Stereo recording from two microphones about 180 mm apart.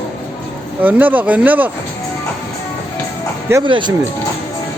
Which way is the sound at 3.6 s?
25° right (ahead or behind).